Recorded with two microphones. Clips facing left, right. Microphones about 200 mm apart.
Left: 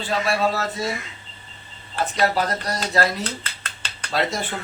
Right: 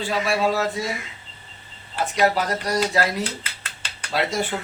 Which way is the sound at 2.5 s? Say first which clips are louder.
Right 3 dB; 10° right (ahead or behind).